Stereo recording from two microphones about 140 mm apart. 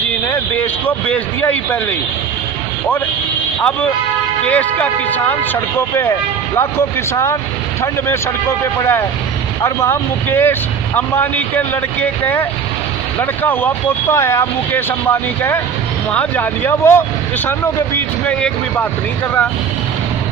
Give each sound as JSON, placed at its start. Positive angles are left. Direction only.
{"t": 0.3, "sound": "speech", "side_deg": 10}
{"t": 3.6, "sound": "speech", "side_deg": 10}
{"t": 6.6, "sound": "speech", "side_deg": 15}